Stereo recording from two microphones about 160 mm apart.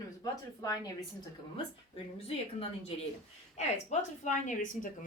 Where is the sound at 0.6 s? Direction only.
20° left (ahead or behind).